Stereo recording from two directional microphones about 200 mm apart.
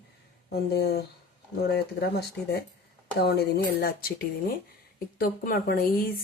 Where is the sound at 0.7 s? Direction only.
55° left (ahead or behind).